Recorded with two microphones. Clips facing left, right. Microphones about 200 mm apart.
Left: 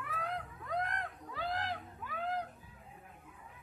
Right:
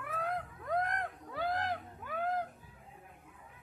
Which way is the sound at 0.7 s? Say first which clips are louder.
Right 4 dB; 50° right (ahead or behind).